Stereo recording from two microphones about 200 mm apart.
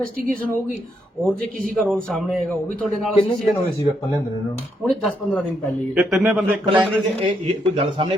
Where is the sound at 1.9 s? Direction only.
5° left (ahead or behind).